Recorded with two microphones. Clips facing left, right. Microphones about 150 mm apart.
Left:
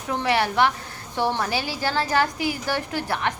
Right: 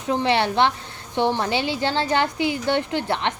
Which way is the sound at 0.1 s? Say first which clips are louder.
Right 2 dB; 25° right (ahead or behind).